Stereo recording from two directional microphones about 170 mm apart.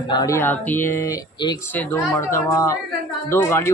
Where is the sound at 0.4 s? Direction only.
10° left (ahead or behind).